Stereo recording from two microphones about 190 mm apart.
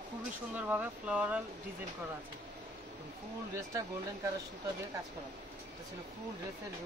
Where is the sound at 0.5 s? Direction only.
10° right (ahead or behind).